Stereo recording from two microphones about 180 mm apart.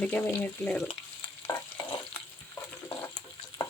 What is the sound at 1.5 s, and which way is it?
Stir, 20° left (ahead or behind).